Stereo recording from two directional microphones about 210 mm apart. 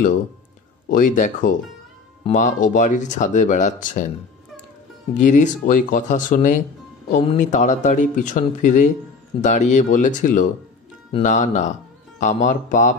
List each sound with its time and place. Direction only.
0.8 s speech: 40° left (ahead or behind)
5.1 s speech: 35° left (ahead or behind)
11.1 s speech: 25° left (ahead or behind)
11.3 s speech: 35° left (ahead or behind)